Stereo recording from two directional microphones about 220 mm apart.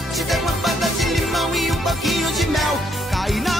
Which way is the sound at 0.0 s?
Centre (ahead or behind).